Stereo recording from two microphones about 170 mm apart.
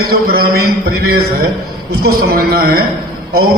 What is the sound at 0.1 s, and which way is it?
A man's voice, 60° right (ahead or behind).